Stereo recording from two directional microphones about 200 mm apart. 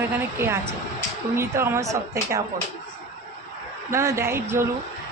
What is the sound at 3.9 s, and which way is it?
Speech, 15° right (ahead or behind).